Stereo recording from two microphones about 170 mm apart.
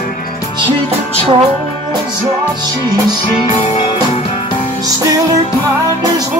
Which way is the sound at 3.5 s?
40° left (ahead or behind).